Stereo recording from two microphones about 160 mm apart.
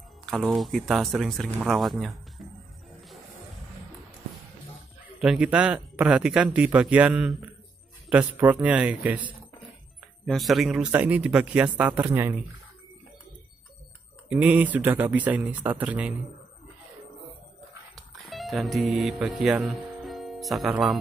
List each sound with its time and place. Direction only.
0.3 s speech: centre (ahead or behind)
5.2 s speech: 5° right (ahead or behind)
10.2 s speech: centre (ahead or behind)
14.3 s speech: 10° right (ahead or behind)
17.9 s music: centre (ahead or behind)